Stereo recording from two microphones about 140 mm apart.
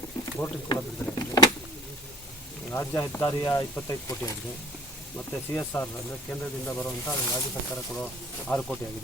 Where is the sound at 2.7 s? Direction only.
15° left (ahead or behind).